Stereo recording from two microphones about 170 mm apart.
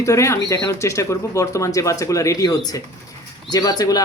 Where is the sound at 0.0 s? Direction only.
15° left (ahead or behind).